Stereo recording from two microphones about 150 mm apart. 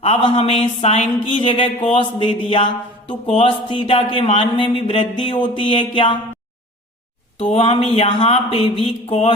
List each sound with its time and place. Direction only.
0.2 s speech: 40° left (ahead or behind)
7.3 s speech: 45° left (ahead or behind)